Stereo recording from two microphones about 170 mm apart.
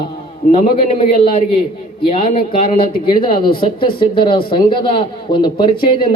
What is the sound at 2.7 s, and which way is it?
Speech, 60° left (ahead or behind).